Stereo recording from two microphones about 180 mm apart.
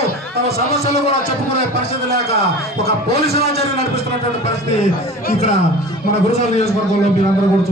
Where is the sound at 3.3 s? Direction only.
35° left (ahead or behind).